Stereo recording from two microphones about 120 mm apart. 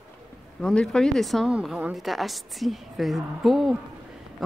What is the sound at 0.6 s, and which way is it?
A woman's voice, 5° left (ahead or behind).